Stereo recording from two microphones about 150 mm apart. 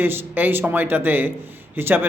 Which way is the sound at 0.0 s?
15° right (ahead or behind).